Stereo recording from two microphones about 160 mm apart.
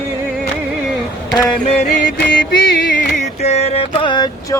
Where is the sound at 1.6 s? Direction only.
50° left (ahead or behind).